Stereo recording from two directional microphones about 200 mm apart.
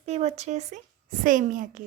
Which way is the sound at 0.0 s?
35° right (ahead or behind).